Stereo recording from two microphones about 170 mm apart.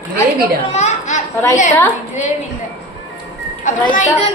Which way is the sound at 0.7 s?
45° left (ahead or behind).